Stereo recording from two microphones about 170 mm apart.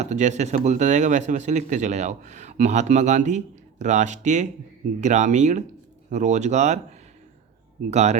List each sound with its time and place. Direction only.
0.0 s speech: 45° right (ahead or behind)
7.9 s speech: 40° right (ahead or behind)